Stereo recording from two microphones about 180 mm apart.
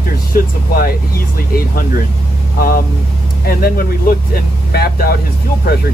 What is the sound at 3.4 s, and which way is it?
Speech, 55° left (ahead or behind).